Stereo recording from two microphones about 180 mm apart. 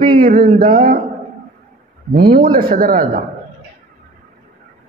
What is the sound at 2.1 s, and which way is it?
Speech, 55° right (ahead or behind).